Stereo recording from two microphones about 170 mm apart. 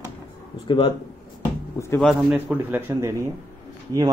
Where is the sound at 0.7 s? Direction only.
30° left (ahead or behind).